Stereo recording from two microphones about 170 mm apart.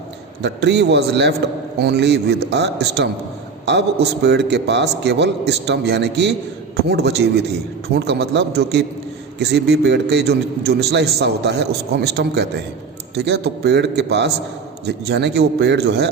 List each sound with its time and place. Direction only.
0.4 s a man's voice: 85° right
6.8 s a man's voice: 75° right (ahead or behind)